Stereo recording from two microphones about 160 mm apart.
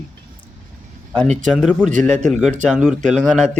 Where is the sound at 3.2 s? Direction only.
5° left (ahead or behind).